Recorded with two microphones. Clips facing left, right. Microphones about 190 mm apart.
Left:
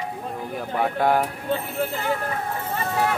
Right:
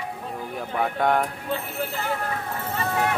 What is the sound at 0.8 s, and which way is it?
Speech, 5° left (ahead or behind).